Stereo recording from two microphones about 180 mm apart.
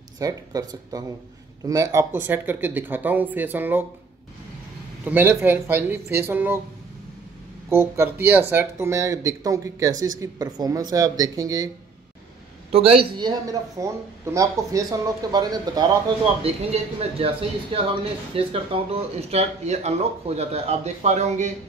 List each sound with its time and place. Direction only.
0.2 s speech: 20° right (ahead or behind)
5.0 s speech: 10° right (ahead or behind)
7.7 s speech: 15° right (ahead or behind)
12.7 s speech: 30° right (ahead or behind)
16.4 s speech: 35° right (ahead or behind)